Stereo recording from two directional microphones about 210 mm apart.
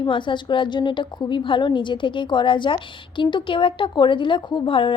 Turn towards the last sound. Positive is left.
turn(degrees=25)  # may be behind; listen again after turning